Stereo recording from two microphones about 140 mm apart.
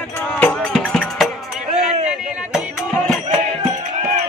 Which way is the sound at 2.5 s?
Centre (ahead or behind).